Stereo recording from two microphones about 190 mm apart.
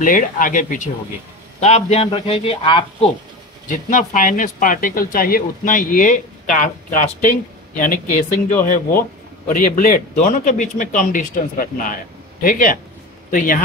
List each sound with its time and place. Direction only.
0.0 s speech: 45° left (ahead or behind); by 3.1 s 30° left (ahead or behind)
3.6 s speech: 45° left (ahead or behind)
9.5 s speech: 45° left (ahead or behind)